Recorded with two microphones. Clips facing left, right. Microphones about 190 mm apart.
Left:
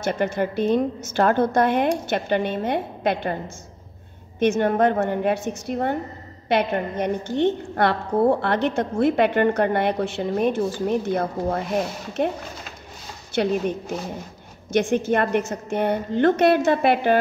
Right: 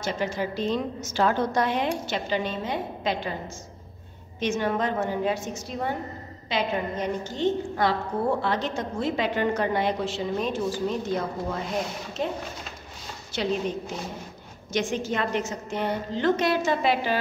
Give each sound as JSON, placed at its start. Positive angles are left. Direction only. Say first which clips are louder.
{"t": 0.0, "sound": "a woman's voice", "louder": "left 5 dB", "side_deg": 55}
{"t": 4.4, "sound": "a woman's voice", "louder": "left 7 dB", "side_deg": 55}